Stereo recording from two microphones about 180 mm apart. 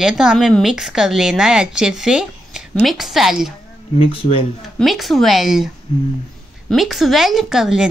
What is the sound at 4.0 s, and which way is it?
Speech, 30° left (ahead or behind).